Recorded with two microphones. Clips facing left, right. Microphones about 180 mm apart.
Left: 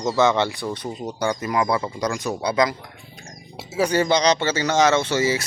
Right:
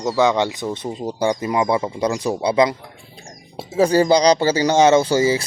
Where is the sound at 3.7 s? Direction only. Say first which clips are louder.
Right 5 dB; 35° right (ahead or behind).